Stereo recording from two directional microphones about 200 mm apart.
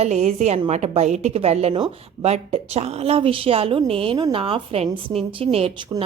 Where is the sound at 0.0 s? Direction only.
30° right (ahead or behind).